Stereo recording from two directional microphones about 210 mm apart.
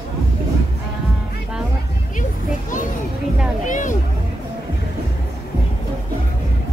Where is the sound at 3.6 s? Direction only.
35° left (ahead or behind).